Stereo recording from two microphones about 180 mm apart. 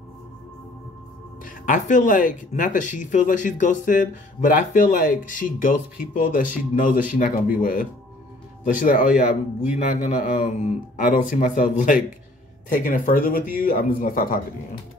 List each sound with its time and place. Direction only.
1.4 s speech: 45° left (ahead or behind)